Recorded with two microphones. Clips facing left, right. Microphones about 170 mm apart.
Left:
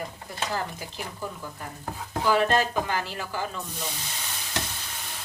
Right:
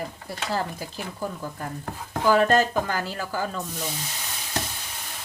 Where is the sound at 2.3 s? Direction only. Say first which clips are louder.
Right 4 dB; 45° right (ahead or behind).